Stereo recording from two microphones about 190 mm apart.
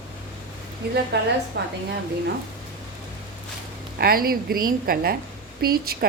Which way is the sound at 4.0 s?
50° right (ahead or behind).